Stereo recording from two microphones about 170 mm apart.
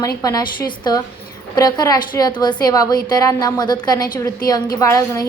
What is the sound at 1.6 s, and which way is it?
A woman's voice, 20° left (ahead or behind).